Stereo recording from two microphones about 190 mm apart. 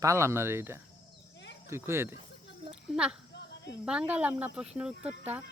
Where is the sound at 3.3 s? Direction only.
65° left (ahead or behind).